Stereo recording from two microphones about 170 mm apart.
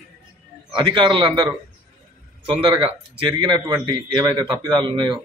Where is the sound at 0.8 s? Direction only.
30° right (ahead or behind).